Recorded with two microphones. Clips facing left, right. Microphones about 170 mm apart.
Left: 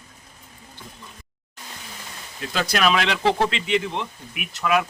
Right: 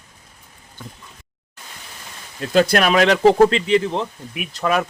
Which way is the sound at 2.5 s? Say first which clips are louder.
Right 6 dB; 50° right (ahead or behind).